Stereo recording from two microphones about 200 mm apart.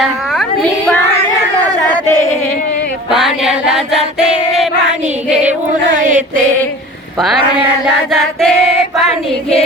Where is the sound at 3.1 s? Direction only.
Centre (ahead or behind).